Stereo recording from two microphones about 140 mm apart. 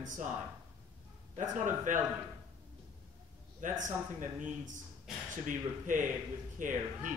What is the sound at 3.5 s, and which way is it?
Speech, 65° right (ahead or behind).